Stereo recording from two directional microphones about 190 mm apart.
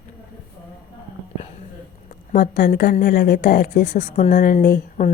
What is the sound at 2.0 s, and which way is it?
A woman's voice, 45° left (ahead or behind).